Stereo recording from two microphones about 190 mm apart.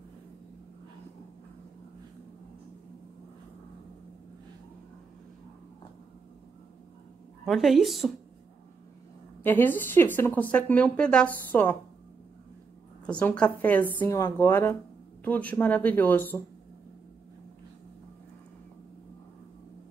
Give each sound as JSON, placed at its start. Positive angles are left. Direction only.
{"t": 7.4, "sound": "a woman's voice", "side_deg": 0}
{"t": 9.4, "sound": "speech", "side_deg": 10}
{"t": 13.0, "sound": "speech", "side_deg": 5}